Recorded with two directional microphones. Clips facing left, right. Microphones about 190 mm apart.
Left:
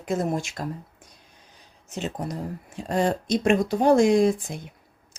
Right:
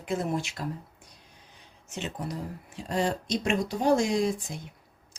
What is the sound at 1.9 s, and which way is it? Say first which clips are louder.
Speech: left 5 dB; 40° left (ahead or behind).